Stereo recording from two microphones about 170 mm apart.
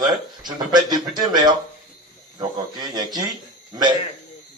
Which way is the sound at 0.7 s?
25° right (ahead or behind).